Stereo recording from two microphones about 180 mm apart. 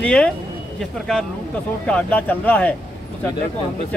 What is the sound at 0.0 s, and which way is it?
Speech, 5° left (ahead or behind).